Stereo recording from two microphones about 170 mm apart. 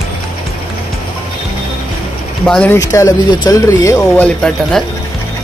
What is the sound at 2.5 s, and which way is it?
Speech, 10° left (ahead or behind).